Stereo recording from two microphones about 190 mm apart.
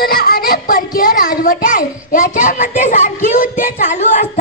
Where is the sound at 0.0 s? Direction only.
50° left (ahead or behind).